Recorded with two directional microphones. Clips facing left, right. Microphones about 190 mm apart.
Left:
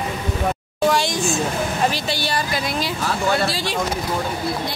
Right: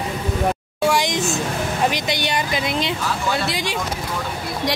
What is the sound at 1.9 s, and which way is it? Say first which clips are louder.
A woman's voice: right 1 dB; 20° right (ahead or behind).